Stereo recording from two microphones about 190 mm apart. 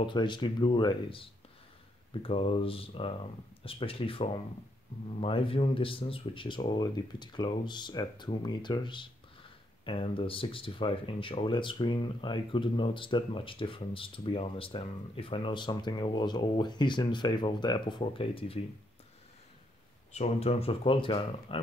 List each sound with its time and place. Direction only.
0.0 s speech: 25° left (ahead or behind)
20.1 s speech: 35° left (ahead or behind)